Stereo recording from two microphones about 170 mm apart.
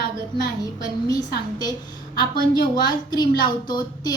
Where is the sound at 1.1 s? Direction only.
25° left (ahead or behind).